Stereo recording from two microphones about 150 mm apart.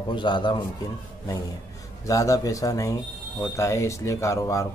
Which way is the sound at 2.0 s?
20° left (ahead or behind).